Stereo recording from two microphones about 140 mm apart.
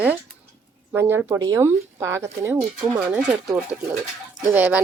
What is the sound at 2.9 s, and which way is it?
Speech, 5° right (ahead or behind).